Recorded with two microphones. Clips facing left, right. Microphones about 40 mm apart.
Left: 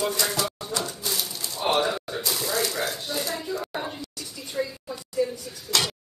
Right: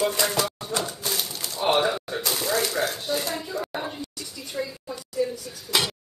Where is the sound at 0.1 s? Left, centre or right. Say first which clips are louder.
Right 2 dB; right.